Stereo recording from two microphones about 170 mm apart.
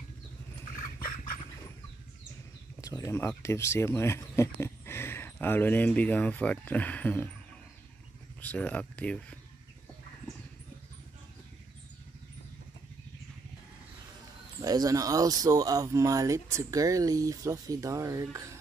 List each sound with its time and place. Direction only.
2.8 s speech: 20° left (ahead or behind)
8.4 s speech: 10° left (ahead or behind)
14.6 s speech: 20° right (ahead or behind)